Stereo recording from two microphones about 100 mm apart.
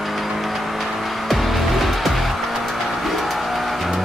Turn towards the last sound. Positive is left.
turn(degrees=0)  # may be behind; listen again after turning